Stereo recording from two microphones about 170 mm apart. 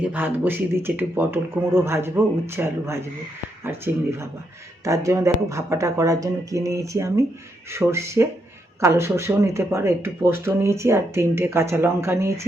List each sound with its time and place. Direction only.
0.1 s speech: 10° right (ahead or behind)